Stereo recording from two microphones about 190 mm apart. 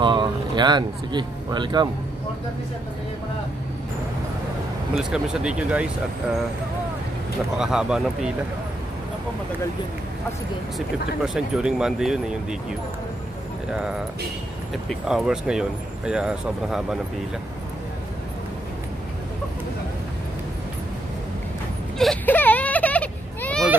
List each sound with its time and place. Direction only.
0.0 s speech: 25° right (ahead or behind)
4.9 s speech: 5° right (ahead or behind)
7.5 s speech: 5° right (ahead or behind)
11.2 s speech: 5° right (ahead or behind)
13.7 s speech: 5° right (ahead or behind)
21.9 s a sound: 5° left (ahead or behind)